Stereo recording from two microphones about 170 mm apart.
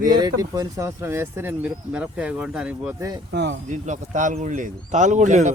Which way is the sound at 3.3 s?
75° right (ahead or behind).